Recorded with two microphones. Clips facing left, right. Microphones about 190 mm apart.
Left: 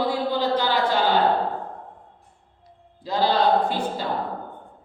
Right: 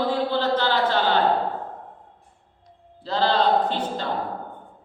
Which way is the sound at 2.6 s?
10° left (ahead or behind).